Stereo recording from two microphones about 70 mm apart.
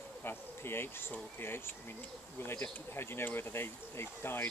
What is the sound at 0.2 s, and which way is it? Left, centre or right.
Bee, left.